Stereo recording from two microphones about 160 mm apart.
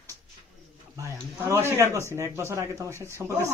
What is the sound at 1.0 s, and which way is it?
Speech, 15° right (ahead or behind).